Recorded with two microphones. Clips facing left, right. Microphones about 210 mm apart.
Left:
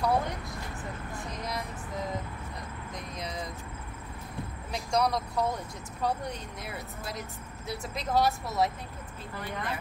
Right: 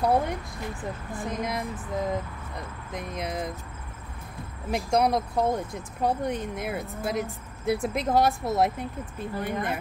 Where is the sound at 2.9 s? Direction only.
55° right (ahead or behind).